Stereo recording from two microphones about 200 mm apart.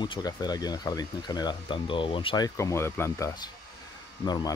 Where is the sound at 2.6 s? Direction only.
15° left (ahead or behind).